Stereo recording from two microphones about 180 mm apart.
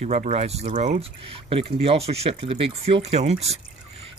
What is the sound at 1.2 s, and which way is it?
Speech, 30° right (ahead or behind).